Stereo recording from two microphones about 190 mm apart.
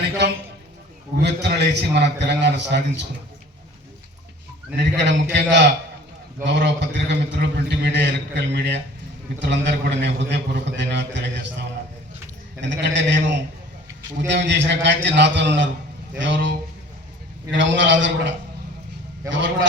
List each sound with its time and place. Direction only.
1.2 s a man's voice: 60° right (ahead or behind)
4.8 s a man's voice: 65° right (ahead or behind)
12.6 s a man's voice: 70° right (ahead or behind)
17.6 s a man's voice: 75° right (ahead or behind)